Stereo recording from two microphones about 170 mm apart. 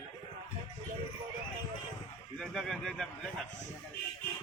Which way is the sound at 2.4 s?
5° left (ahead or behind).